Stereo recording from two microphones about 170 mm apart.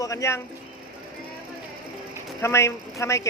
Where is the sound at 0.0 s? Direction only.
20° left (ahead or behind).